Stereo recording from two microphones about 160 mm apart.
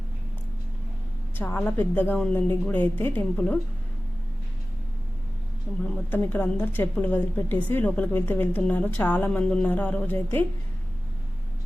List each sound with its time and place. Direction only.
1.4 s a woman's voice: 10° left (ahead or behind)
6.1 s a woman's voice: 10° left (ahead or behind)